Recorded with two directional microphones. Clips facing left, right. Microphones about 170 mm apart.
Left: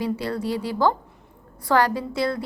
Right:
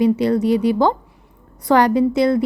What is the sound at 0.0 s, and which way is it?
A woman's voice, 20° right (ahead or behind).